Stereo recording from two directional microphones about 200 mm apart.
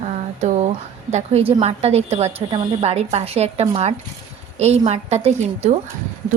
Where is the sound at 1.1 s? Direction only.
30° right (ahead or behind).